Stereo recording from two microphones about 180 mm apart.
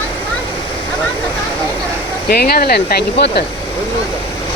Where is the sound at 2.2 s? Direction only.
60° left (ahead or behind).